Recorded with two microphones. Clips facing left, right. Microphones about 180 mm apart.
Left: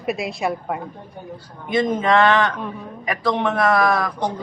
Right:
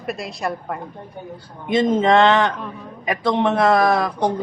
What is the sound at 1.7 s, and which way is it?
A man's voice, 25° right (ahead or behind).